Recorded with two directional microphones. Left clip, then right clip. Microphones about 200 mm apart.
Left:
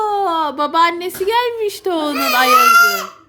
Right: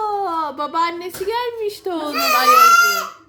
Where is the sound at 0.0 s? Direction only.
40° left (ahead or behind).